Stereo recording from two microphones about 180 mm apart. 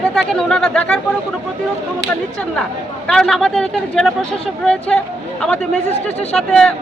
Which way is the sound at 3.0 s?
5° left (ahead or behind).